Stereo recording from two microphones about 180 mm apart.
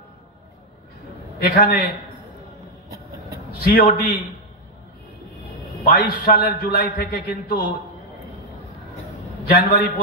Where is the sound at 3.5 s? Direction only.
60° left (ahead or behind).